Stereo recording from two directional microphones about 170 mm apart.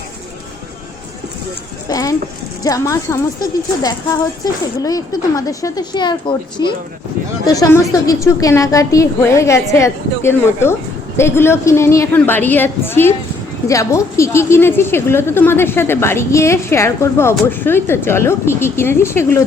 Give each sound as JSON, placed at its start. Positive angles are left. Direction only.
{"t": 1.9, "sound": "a woman's voice", "side_deg": 20}